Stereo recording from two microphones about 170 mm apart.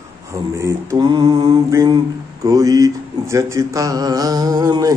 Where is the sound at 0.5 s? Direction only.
15° right (ahead or behind).